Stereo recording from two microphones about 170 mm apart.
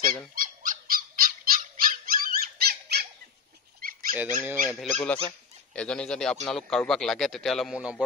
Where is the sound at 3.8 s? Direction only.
55° right (ahead or behind).